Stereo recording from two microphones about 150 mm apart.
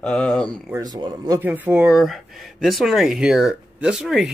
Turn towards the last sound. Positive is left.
turn(degrees=-5)  # may be behind; listen again after turning